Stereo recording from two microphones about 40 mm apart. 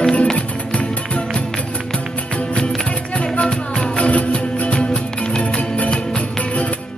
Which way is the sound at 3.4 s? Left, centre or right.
Left.